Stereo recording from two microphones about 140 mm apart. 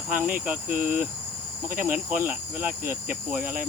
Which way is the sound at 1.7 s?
80° right.